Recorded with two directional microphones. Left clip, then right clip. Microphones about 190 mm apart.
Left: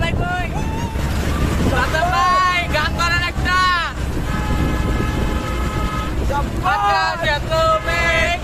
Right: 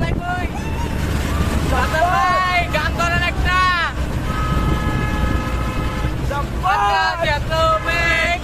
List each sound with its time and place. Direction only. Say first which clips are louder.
2.0 s vehicle: even; 10° left (ahead or behind)
6.9 s vehicle: even; 5° left (ahead or behind)